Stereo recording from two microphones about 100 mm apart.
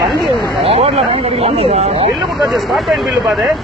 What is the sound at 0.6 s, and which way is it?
Speech, 90° right.